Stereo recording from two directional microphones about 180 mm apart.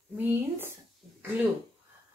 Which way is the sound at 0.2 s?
10° right (ahead or behind).